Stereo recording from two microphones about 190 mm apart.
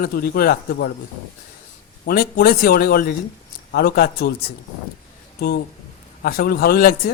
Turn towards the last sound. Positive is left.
turn(degrees=50)  # may be behind; listen again after turning